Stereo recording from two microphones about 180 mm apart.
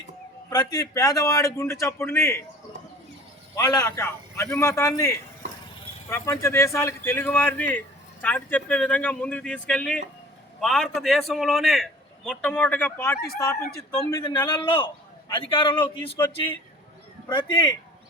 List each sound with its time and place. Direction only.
0.5 s speech: 20° left (ahead or behind)
3.5 s a man's voice: 20° left (ahead or behind)